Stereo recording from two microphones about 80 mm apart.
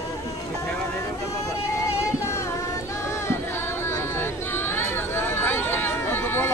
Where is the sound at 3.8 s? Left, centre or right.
Left.